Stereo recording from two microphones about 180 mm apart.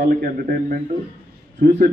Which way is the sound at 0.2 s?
60° right (ahead or behind).